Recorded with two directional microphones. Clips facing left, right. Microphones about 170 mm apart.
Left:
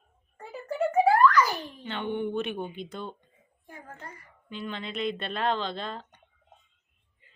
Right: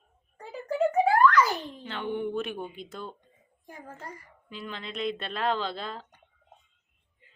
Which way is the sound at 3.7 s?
35° right (ahead or behind).